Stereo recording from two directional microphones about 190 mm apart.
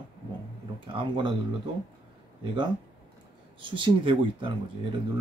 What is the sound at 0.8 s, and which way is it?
Speech, 25° right (ahead or behind).